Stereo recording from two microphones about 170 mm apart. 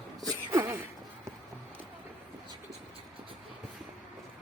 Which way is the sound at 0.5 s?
15° right (ahead or behind).